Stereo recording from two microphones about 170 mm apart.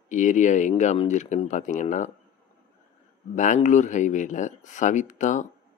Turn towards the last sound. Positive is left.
turn(degrees=45)  # may be behind; listen again after turning